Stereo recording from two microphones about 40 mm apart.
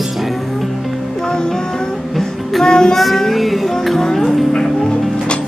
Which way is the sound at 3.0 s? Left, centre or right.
Centre.